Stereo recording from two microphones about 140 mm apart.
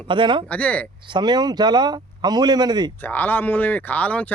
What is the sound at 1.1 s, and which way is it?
Speech, 30° right (ahead or behind).